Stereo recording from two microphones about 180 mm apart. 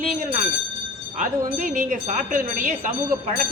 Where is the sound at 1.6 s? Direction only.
50° right (ahead or behind).